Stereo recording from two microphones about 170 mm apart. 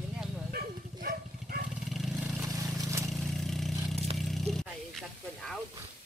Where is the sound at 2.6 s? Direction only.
15° right (ahead or behind).